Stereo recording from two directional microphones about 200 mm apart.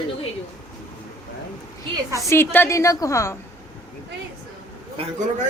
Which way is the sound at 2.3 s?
10° left (ahead or behind).